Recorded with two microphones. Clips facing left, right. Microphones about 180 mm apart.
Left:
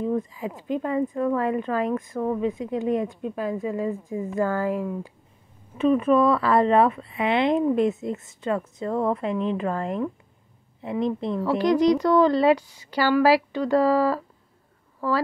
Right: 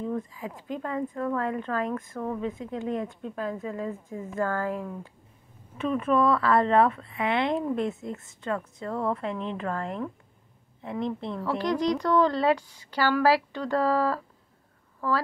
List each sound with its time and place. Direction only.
0.0 s speech: 20° left (ahead or behind)